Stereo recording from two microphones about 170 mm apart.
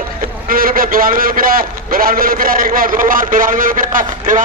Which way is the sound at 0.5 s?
55° right (ahead or behind).